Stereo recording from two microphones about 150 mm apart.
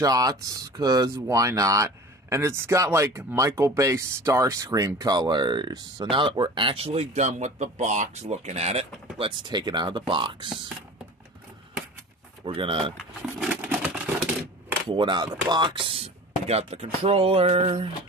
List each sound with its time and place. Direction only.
0.0 s speech: 25° right (ahead or behind); by 8.8 s 45° right (ahead or behind)
9.2 s speech: 30° right (ahead or behind)
12.4 s speech: 35° right (ahead or behind)
12.9 s a sound: centre (ahead or behind)
14.9 s speech: 30° right (ahead or behind)